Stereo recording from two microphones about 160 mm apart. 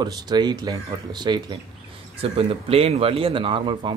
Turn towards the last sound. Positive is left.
turn(degrees=-30)  # may be behind; listen again after turning